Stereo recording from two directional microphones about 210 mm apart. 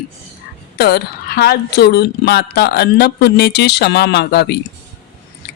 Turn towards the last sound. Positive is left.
turn(degrees=50)  # may be behind; listen again after turning